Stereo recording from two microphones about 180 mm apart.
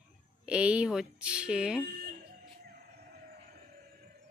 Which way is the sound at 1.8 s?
55° right (ahead or behind).